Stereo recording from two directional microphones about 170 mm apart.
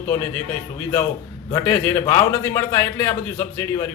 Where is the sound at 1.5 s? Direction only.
15° left (ahead or behind).